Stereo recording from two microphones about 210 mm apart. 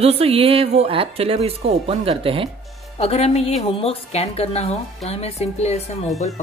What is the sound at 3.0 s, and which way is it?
A woman's voice, 30° left (ahead or behind).